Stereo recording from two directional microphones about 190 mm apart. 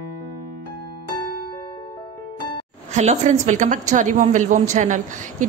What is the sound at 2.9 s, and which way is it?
A woman's voice, 35° right (ahead or behind).